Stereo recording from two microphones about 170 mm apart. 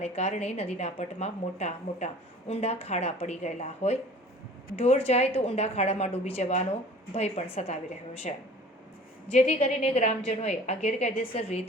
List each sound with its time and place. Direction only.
0.0 s a woman's voice: 40° left (ahead or behind)